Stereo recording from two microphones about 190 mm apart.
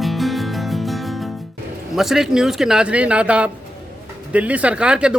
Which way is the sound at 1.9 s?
Centre (ahead or behind).